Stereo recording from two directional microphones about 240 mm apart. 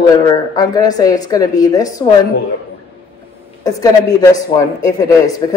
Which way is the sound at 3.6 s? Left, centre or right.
Centre.